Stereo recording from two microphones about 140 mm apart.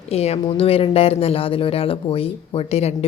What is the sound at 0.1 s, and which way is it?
Speech, 45° left (ahead or behind).